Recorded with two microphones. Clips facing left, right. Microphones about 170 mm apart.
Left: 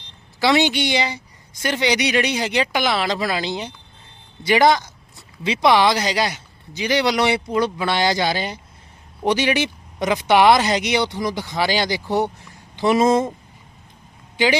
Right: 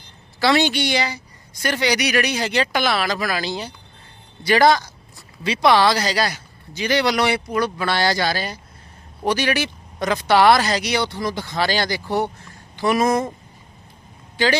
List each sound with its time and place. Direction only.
0.3 s speech: 20° left (ahead or behind)
14.3 s a man's voice: 15° left (ahead or behind)